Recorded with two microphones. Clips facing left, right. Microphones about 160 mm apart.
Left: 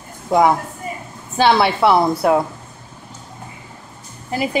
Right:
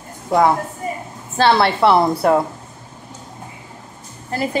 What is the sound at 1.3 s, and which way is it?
A woman's voice, 10° left (ahead or behind).